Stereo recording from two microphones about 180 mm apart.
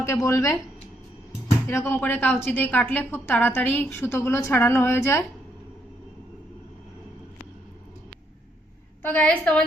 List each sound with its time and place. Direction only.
0.0 s a woman's voice: 15° left (ahead or behind)
1.6 s a woman's voice: 15° left (ahead or behind)
9.0 s a woman's voice: 10° left (ahead or behind)